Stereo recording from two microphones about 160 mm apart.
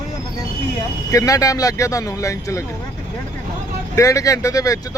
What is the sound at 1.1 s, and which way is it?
Speech, 20° left (ahead or behind).